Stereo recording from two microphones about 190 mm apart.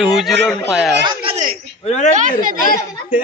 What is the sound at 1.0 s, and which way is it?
Speech, 25° right (ahead or behind).